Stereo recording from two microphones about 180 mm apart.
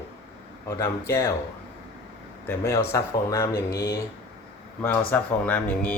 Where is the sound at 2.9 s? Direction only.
15° left (ahead or behind).